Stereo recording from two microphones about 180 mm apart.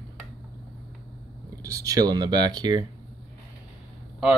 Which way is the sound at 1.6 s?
20° right (ahead or behind).